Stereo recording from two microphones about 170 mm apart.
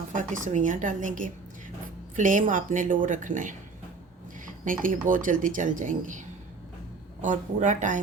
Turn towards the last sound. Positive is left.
turn(degrees=-45)  # may be behind; listen again after turning